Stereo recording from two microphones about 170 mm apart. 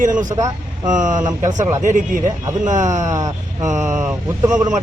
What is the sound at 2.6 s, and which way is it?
Speech, 45° right (ahead or behind).